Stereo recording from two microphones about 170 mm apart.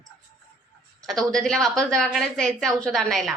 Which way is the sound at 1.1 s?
Centre (ahead or behind).